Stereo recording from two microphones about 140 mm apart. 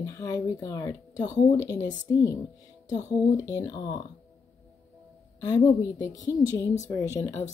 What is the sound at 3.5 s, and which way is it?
Speech, 25° left (ahead or behind).